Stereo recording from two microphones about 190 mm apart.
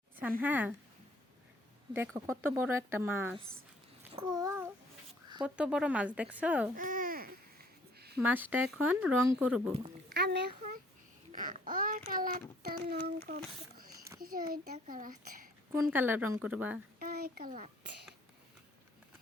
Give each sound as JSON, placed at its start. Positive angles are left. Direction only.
{"t": 0.2, "sound": "speech", "side_deg": -10}
{"t": 1.9, "sound": "speech", "side_deg": -15}
{"t": 4.2, "sound": "a sound", "side_deg": -20}
{"t": 5.4, "sound": "speech", "side_deg": -5}
{"t": 6.7, "sound": "babbling", "side_deg": -45}
{"t": 7.9, "sound": "a sound", "side_deg": -55}
{"t": 8.2, "sound": "speech", "side_deg": -10}
{"t": 10.1, "sound": "a child's voice", "side_deg": -60}
{"t": 11.3, "sound": "a child's voice", "side_deg": -45}
{"t": 15.8, "sound": "speech", "side_deg": -10}
{"t": 17.0, "sound": "a child's voice", "side_deg": -50}